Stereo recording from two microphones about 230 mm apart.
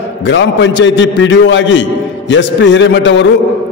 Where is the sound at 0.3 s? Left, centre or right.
Left.